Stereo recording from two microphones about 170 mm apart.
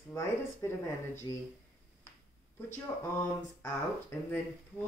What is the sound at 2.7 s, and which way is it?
Speech, 15° left (ahead or behind).